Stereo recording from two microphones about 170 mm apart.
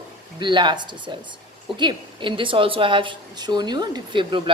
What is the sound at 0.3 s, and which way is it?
A woman's voice, 25° right (ahead or behind).